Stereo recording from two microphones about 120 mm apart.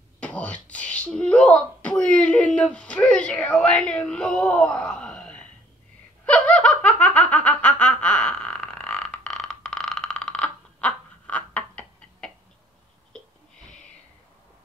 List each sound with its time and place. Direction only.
0.2 s speech: 10° left (ahead or behind)
6.2 s laughter: 10° left (ahead or behind)